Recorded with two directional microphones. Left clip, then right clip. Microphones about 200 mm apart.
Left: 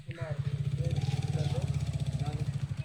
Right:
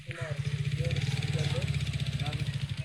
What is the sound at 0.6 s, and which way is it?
Vehicle, 45° left (ahead or behind).